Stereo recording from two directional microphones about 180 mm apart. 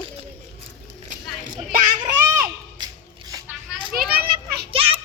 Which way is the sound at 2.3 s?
20° right (ahead or behind).